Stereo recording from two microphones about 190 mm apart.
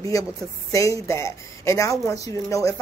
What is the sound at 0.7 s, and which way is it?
A woman's voice, 15° left (ahead or behind).